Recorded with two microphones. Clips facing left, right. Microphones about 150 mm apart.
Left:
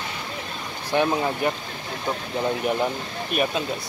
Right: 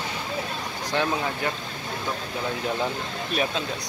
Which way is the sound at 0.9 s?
15° left (ahead or behind).